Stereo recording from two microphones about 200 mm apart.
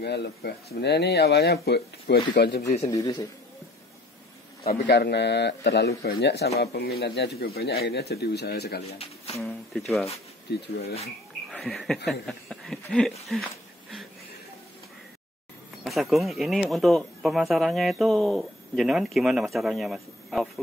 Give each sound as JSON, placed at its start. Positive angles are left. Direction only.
{"t": 0.0, "sound": "speech", "side_deg": 55}
{"t": 2.9, "sound": "a man's voice", "side_deg": 15}
{"t": 4.6, "sound": "a man's voice", "side_deg": 55}
{"t": 8.9, "sound": "speech", "side_deg": 30}
{"t": 9.8, "sound": "speech", "side_deg": 0}
{"t": 10.5, "sound": "a man's voice", "side_deg": 55}
{"t": 11.5, "sound": "speech", "side_deg": 0}
{"t": 15.8, "sound": "speech", "side_deg": 0}